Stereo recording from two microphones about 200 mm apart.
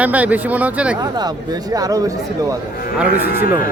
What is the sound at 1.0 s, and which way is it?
Speech, 20° right (ahead or behind).